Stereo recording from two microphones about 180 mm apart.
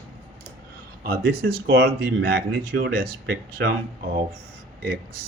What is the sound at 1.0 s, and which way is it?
Speech, 55° right (ahead or behind).